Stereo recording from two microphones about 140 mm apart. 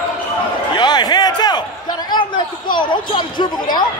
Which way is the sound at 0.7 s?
30° left (ahead or behind).